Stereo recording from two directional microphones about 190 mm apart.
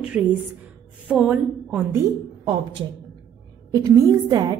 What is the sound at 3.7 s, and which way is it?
Speech, 20° right (ahead or behind).